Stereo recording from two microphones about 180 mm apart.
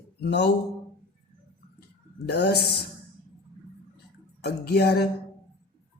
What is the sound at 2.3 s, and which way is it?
Speech, 65° left (ahead or behind).